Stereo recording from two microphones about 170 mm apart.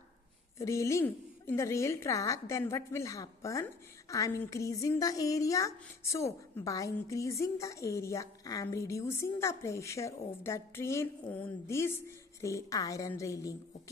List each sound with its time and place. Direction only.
0.6 s a woman's voice: 15° left (ahead or behind)